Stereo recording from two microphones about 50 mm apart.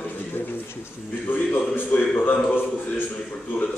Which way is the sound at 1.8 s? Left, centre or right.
Left.